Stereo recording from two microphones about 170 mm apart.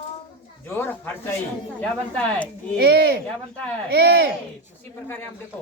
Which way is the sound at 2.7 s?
70° right (ahead or behind).